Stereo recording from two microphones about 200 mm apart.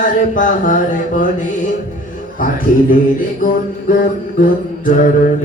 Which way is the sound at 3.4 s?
45° left (ahead or behind).